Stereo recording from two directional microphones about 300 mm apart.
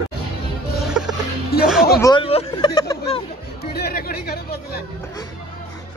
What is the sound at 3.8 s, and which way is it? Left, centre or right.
Speech, left.